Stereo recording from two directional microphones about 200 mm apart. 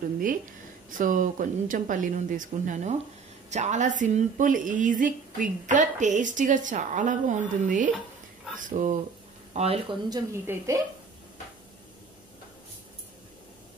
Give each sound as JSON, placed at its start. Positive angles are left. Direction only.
{"t": 0.8, "sound": "a woman's voice", "side_deg": -40}